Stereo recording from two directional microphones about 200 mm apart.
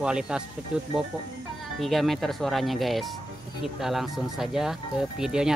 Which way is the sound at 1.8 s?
Centre (ahead or behind).